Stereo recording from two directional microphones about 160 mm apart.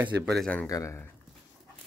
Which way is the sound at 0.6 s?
20° left (ahead or behind).